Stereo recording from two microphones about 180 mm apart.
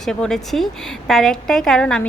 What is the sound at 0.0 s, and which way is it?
A woman's voice, 5° left (ahead or behind).